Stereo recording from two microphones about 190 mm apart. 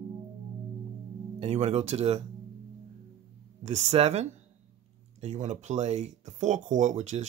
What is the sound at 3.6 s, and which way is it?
Speech, 35° right (ahead or behind).